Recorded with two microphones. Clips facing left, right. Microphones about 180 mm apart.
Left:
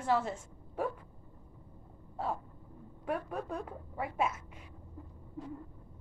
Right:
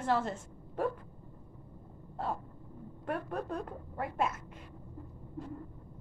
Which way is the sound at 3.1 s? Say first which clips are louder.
Even; 10° left (ahead or behind).